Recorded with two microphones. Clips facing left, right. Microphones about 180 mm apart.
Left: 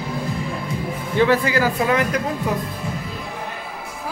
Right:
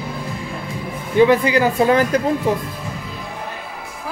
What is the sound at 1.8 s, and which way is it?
Speech, 30° right (ahead or behind).